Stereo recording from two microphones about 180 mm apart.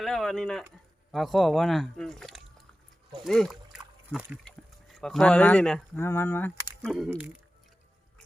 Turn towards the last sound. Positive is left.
turn(degrees=0)  # may be behind; listen again after turning